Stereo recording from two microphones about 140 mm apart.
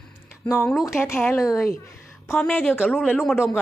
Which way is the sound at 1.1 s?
15° left (ahead or behind).